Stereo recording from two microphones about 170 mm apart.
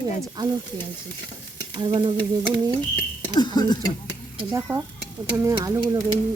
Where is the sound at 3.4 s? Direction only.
25° left (ahead or behind).